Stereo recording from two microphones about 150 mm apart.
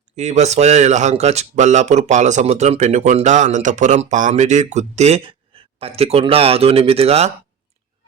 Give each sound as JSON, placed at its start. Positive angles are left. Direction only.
{"t": 0.2, "sound": "speech", "side_deg": -50}